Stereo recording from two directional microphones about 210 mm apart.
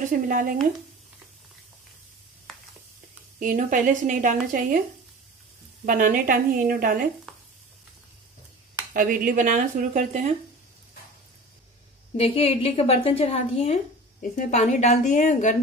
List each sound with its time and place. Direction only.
0.1 s speech: 40° right (ahead or behind)
3.3 s speech: 40° right (ahead or behind)
5.9 s speech: 40° right (ahead or behind)
8.9 s speech: 40° right (ahead or behind)
12.2 s a woman's voice: 30° left (ahead or behind)